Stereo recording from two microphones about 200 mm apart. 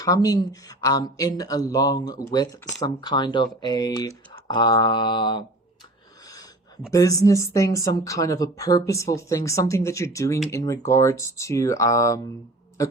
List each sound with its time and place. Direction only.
0.0 s speech: 20° left (ahead or behind)
2.8 s typing: 20° left (ahead or behind)
6.9 s speech: 15° left (ahead or behind)
12.8 s a sound: 15° left (ahead or behind)